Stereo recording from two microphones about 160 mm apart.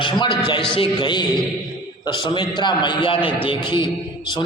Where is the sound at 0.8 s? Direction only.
30° left (ahead or behind).